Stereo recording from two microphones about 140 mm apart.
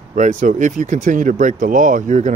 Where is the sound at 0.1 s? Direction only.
60° right (ahead or behind).